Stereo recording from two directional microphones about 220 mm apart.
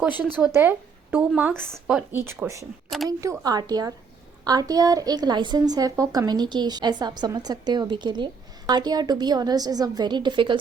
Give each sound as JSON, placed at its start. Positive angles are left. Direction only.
{"t": 0.3, "sound": "a woman's voice", "side_deg": -10}